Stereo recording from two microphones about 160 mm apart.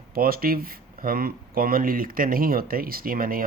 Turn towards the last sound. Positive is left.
turn(degrees=-65)  # may be behind; listen again after turning